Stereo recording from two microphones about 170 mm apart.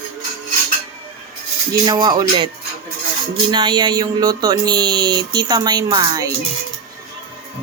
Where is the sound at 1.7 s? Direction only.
25° right (ahead or behind).